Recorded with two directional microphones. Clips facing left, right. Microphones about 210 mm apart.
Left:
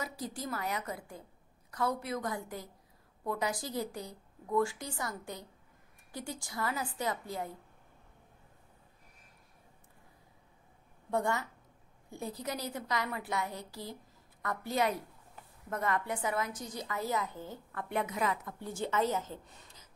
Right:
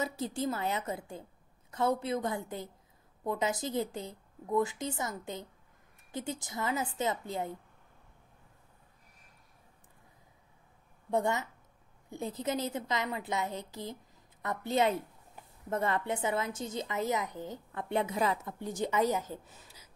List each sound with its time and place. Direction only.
0.0 s a woman's voice: 25° right (ahead or behind)
11.1 s a woman's voice: 20° right (ahead or behind)
18.6 s a woman's voice: 15° right (ahead or behind)